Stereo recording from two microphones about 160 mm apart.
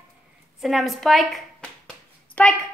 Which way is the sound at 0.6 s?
Centre (ahead or behind).